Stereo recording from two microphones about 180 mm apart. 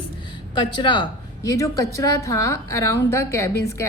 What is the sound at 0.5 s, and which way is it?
A woman's voice, 25° left (ahead or behind).